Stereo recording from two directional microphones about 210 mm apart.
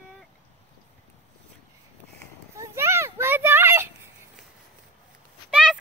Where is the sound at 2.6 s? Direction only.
10° right (ahead or behind).